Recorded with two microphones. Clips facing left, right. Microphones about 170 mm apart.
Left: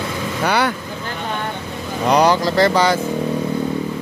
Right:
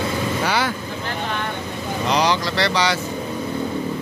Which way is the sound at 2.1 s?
55° left (ahead or behind).